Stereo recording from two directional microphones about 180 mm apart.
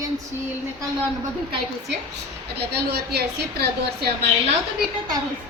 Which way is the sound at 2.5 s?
65° right (ahead or behind).